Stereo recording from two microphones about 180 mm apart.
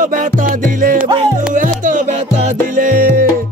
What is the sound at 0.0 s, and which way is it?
Music, 50° right (ahead or behind).